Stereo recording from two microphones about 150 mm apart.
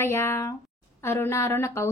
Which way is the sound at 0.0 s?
15° left (ahead or behind).